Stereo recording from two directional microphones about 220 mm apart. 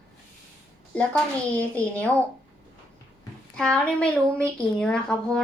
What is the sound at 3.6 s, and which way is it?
A woman's voice, 5° left (ahead or behind).